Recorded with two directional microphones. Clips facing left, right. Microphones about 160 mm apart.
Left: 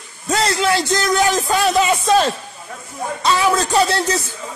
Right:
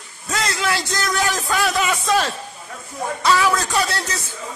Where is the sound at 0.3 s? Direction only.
30° left (ahead or behind).